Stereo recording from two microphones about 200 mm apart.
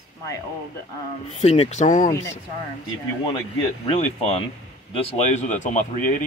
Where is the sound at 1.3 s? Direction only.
30° left (ahead or behind).